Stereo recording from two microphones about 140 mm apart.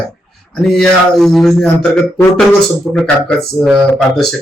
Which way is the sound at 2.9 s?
5° left (ahead or behind).